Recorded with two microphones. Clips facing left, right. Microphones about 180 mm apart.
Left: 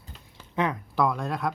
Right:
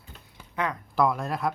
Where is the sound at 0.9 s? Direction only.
Centre (ahead or behind).